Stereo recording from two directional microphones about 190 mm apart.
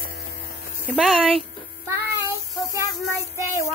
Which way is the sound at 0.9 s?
Centre (ahead or behind).